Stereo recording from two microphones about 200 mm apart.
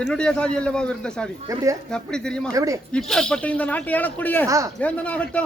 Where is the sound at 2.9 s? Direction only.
5° left (ahead or behind).